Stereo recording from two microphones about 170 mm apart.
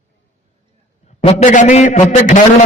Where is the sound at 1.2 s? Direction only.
50° left (ahead or behind).